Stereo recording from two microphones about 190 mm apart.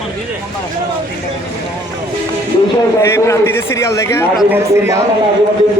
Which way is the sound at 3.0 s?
15° left (ahead or behind).